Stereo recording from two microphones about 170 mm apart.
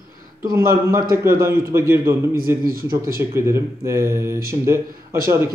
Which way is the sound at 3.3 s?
15° right (ahead or behind).